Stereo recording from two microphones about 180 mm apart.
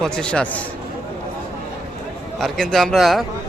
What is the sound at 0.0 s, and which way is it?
Speech, 5° left (ahead or behind).